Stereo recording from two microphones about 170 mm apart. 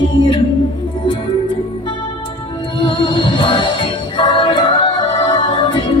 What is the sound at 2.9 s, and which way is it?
Music, 30° left (ahead or behind).